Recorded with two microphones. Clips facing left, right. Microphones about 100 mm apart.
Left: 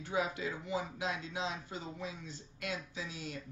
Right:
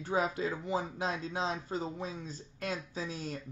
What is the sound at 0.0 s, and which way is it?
Speech, 35° right (ahead or behind).